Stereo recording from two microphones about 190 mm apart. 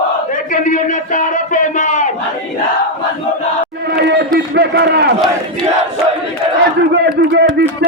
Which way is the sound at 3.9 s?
60° right (ahead or behind).